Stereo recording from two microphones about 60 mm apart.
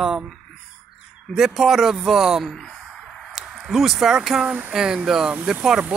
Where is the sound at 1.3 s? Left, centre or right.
Centre.